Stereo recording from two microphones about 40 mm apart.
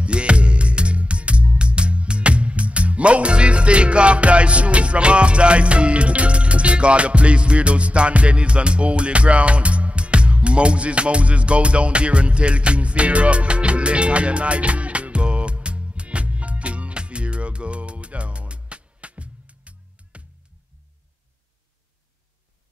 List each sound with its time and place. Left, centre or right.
0.0 s music: right